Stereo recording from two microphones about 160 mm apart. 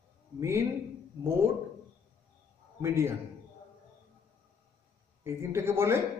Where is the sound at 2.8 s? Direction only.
15° right (ahead or behind).